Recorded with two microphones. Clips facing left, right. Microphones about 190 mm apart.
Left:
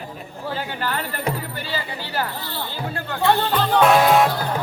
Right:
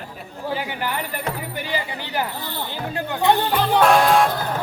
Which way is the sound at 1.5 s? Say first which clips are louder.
Right 2 dB; 15° right (ahead or behind).